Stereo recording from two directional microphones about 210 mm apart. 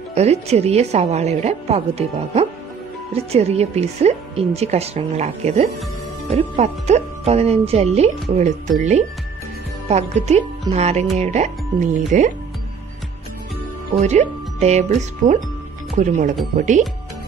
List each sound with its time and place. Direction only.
0.1 s speech: 30° right (ahead or behind)
13.9 s speech: 30° right (ahead or behind)